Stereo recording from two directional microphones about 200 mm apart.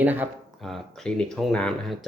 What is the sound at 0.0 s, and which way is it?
Speech, 10° right (ahead or behind).